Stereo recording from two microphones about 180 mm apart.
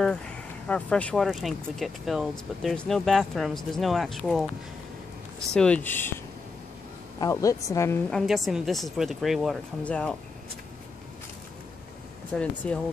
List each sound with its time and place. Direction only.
0.7 s speech: 5° left (ahead or behind)
5.5 s a woman's voice: 5° left (ahead or behind)
7.2 s a woman's voice: 20° left (ahead or behind)
8.1 s speech: centre (ahead or behind)
12.4 s speech: 5° left (ahead or behind)